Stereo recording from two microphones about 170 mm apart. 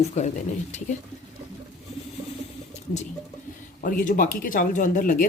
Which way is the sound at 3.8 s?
50° left (ahead or behind).